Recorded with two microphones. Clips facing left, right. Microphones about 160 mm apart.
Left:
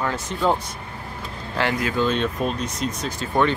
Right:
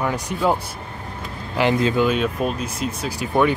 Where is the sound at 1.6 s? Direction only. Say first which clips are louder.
Right 5 dB; 20° right (ahead or behind).